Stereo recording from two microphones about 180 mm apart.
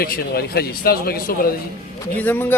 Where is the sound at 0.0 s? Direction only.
60° left (ahead or behind).